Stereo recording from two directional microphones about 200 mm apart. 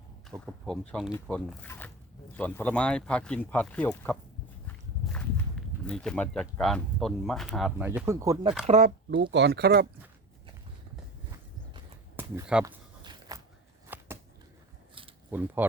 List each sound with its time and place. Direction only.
0.3 s speech: centre (ahead or behind)
7.9 s speech: 15° right (ahead or behind)
8.8 s speech: 55° right (ahead or behind)
12.1 s speech: 5° right (ahead or behind)
12.6 s a sound: 20° right (ahead or behind)
13.9 s a sound: 10° right (ahead or behind)
15.3 s speech: 10° right (ahead or behind)